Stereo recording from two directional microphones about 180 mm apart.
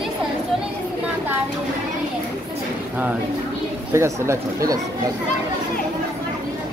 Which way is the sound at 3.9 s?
15° right (ahead or behind).